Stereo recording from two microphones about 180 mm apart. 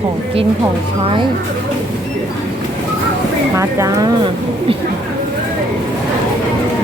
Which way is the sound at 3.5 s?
15° right (ahead or behind).